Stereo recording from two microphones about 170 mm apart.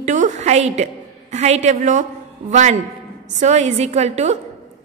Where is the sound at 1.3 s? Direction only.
40° right (ahead or behind).